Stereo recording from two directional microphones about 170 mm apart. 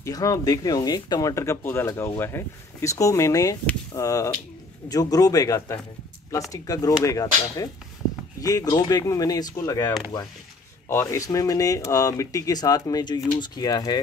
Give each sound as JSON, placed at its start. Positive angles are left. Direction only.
{"t": 0.0, "sound": "speech", "side_deg": 20}